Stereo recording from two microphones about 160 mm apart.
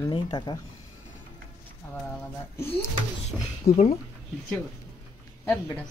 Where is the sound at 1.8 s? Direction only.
15° left (ahead or behind).